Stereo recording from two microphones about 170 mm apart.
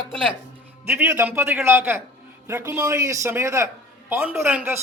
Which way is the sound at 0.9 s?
15° right (ahead or behind).